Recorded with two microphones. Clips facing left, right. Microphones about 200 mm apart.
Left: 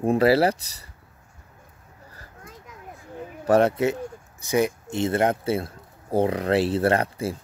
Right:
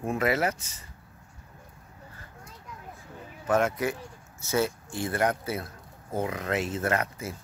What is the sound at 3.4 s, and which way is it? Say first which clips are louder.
Speech: left 6 dB; 35° left (ahead or behind).